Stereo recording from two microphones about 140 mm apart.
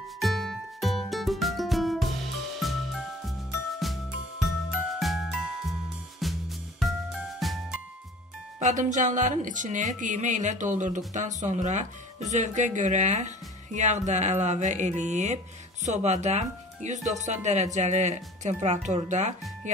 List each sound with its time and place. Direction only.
0.2 s music: centre (ahead or behind)
3.3 s music: centre (ahead or behind)
8.5 s speech: 60° right (ahead or behind)